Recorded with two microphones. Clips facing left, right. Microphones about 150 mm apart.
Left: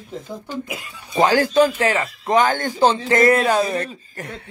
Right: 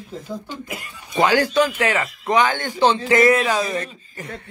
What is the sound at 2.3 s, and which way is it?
Speech, 45° left (ahead or behind).